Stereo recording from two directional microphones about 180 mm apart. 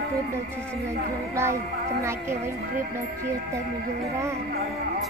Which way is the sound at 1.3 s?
15° right (ahead or behind).